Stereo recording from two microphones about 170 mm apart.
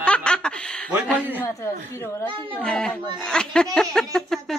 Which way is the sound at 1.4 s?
15° left (ahead or behind).